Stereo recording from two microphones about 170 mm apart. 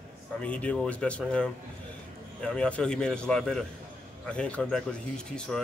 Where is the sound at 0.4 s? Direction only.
5° left (ahead or behind).